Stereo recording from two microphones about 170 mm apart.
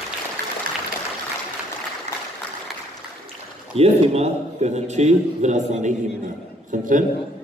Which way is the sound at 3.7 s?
40° right (ahead or behind).